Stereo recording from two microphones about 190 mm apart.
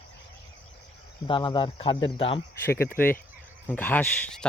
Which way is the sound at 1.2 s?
25° left (ahead or behind).